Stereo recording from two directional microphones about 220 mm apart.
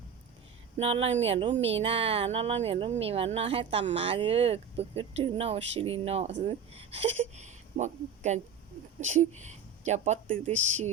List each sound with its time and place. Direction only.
0.8 s speech: 25° right (ahead or behind)